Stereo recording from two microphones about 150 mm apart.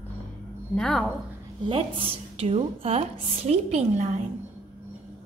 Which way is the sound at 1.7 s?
40° right (ahead or behind).